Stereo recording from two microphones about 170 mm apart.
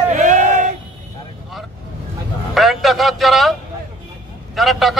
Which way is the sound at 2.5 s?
Centre (ahead or behind).